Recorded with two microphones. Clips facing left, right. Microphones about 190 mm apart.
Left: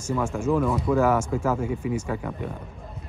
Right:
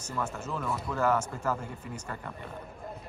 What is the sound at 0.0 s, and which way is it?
Speech, 10° left (ahead or behind).